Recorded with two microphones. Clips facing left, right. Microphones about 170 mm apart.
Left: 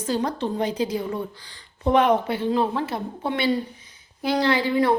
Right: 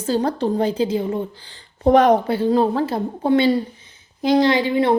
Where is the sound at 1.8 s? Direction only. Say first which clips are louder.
Right 5 dB; 40° right (ahead or behind).